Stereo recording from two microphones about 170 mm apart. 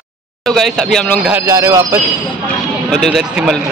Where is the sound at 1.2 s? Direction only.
15° right (ahead or behind).